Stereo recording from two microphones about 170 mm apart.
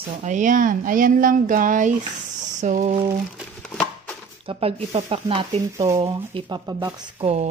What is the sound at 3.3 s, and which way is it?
Crumpling, centre (ahead or behind).